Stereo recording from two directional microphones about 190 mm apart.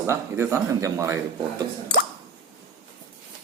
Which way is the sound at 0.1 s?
15° right (ahead or behind).